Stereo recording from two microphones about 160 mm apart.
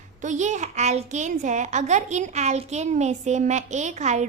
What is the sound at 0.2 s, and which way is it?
A child's voice, 50° right (ahead or behind).